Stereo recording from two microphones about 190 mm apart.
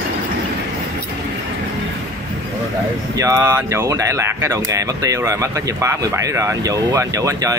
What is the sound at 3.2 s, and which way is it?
Speech, 15° right (ahead or behind).